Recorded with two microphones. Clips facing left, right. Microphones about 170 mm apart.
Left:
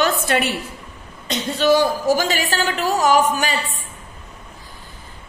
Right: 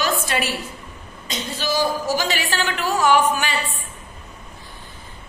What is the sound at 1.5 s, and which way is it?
Speech, 60° left (ahead or behind).